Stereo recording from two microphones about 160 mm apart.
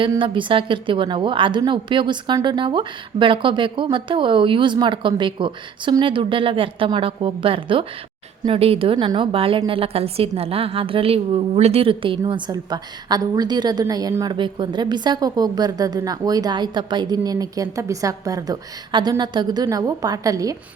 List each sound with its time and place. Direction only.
0.0 s a woman's voice: 30° right (ahead or behind)